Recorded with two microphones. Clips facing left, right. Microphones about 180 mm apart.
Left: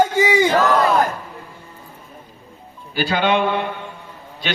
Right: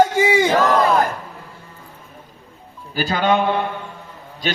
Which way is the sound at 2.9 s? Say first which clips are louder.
Even; 40° right (ahead or behind).